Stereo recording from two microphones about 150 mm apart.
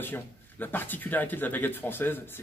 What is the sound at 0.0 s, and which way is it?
Speech, 15° left (ahead or behind).